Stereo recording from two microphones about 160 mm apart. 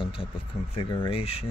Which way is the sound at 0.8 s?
35° left (ahead or behind).